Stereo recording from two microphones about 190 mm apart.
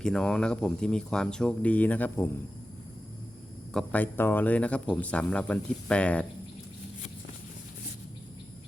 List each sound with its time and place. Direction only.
0.0 s speech: 5° left (ahead or behind)
3.7 s speech: 5° left (ahead or behind)